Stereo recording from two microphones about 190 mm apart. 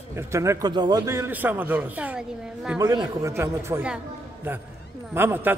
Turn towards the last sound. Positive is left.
turn(degrees=-10)  # may be behind; listen again after turning